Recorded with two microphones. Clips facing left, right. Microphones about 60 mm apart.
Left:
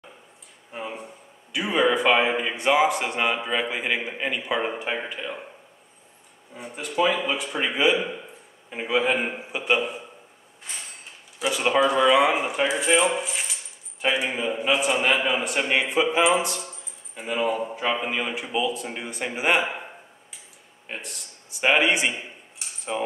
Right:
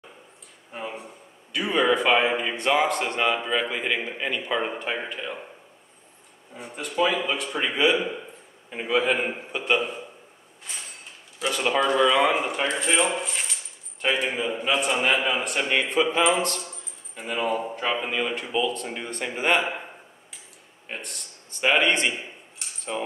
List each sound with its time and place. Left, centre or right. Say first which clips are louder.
0.7 s a man's voice: left 1 dB; centre
6.5 s a man's voice: left 1 dB; centre
11.3 s a man's voice: left 2 dB; centre
20.9 s a man's voice: even; centre
22.6 s cutlery: left 2 dB; centre